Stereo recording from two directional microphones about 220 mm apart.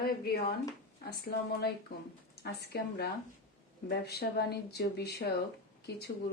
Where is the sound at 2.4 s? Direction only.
50° left (ahead or behind).